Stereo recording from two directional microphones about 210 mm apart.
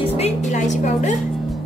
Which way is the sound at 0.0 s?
30° left (ahead or behind).